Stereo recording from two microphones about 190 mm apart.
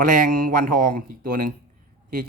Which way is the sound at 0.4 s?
45° right (ahead or behind).